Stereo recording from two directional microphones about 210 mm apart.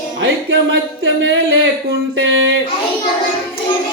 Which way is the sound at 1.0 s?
60° right (ahead or behind).